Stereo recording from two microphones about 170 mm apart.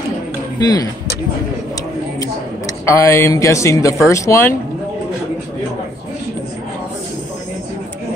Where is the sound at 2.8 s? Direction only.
15° left (ahead or behind).